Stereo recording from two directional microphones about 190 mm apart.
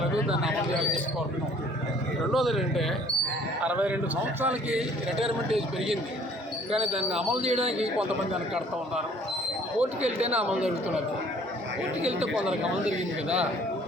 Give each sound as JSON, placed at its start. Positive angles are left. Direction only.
{"t": 2.3, "sound": "a man's voice", "side_deg": 0}
{"t": 4.8, "sound": "a man's voice", "side_deg": -30}
{"t": 6.8, "sound": "a man's voice", "side_deg": -5}
{"t": 7.3, "sound": "a man's voice", "side_deg": -35}
{"t": 10.2, "sound": "a man's voice", "side_deg": -35}
{"t": 12.2, "sound": "a man's voice", "side_deg": -5}